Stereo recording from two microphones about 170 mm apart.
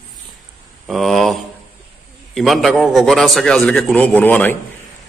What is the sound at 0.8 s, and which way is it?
A man's voice, centre (ahead or behind).